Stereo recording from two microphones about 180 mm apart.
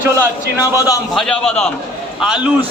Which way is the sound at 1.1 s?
5° left (ahead or behind).